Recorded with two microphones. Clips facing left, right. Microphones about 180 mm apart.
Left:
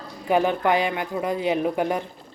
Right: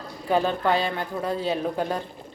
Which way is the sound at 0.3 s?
15° left (ahead or behind).